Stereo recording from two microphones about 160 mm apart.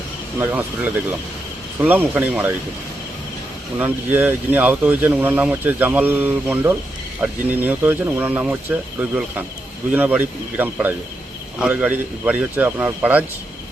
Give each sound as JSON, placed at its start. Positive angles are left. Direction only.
{"t": 0.3, "sound": "speech", "side_deg": -10}
{"t": 3.8, "sound": "speech", "side_deg": -10}